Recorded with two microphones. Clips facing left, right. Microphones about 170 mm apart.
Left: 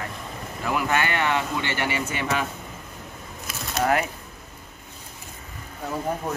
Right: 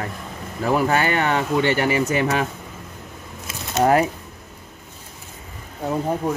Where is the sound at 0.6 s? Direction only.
35° right (ahead or behind).